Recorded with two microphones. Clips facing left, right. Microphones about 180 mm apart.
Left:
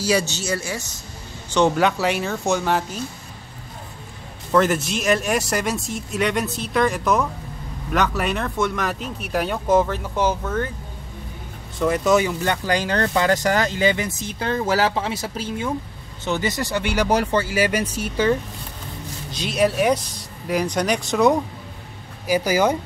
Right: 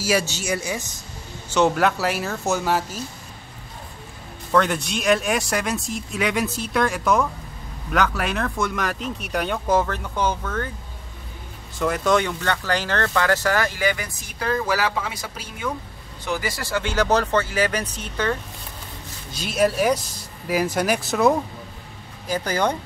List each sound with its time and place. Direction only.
0.0 s speech: 10° right (ahead or behind)
1.5 s speech: 5° right (ahead or behind)
4.5 s speech: 5° left (ahead or behind)
11.8 s speech: centre (ahead or behind)
19.3 s speech: centre (ahead or behind)
22.3 s speech: 10° left (ahead or behind)